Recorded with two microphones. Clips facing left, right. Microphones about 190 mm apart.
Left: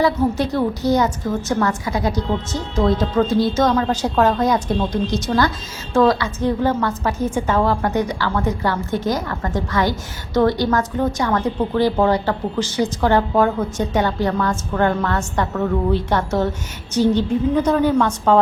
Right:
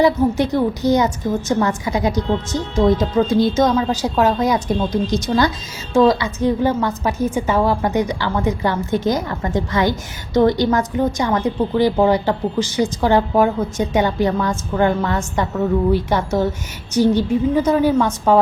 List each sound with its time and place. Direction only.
0.0 s a woman's voice: 20° right (ahead or behind)